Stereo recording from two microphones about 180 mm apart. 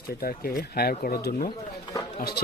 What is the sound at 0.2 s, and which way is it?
Speech, 55° left (ahead or behind).